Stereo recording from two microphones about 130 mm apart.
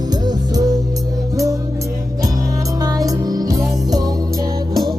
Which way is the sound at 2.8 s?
30° right (ahead or behind).